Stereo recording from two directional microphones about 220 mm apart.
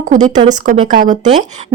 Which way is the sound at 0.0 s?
35° right (ahead or behind).